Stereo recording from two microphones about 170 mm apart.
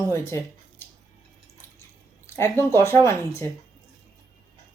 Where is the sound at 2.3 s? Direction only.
15° left (ahead or behind).